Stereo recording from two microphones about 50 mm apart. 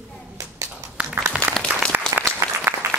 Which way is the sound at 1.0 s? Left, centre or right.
Right.